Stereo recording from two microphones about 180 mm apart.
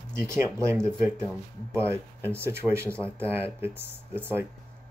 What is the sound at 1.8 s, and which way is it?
Speech, 15° right (ahead or behind).